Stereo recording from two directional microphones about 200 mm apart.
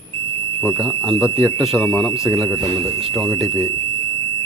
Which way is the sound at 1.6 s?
Centre (ahead or behind).